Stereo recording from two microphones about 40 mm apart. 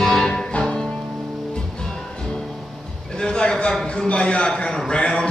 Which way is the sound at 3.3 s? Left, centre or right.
Left.